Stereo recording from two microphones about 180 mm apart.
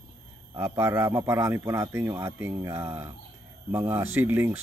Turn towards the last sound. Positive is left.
turn(degrees=-10)  # may be behind; listen again after turning